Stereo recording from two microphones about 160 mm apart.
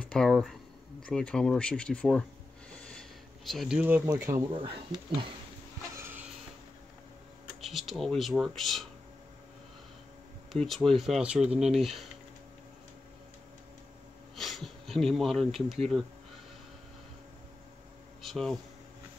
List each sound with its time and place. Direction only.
0.0 s speech: 5° left (ahead or behind)
2.7 s a sound: 5° left (ahead or behind); by 4.4 s 15° right (ahead or behind)
4.5 s speech: 30° right (ahead or behind)
5.9 s a sound: 15° right (ahead or behind)
7.6 s speech: centre (ahead or behind)
10.5 s speech: centre (ahead or behind)
14.3 s speech: centre (ahead or behind)
18.2 s speech: centre (ahead or behind)